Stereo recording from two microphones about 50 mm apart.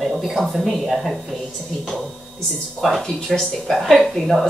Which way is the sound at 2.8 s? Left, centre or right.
Centre.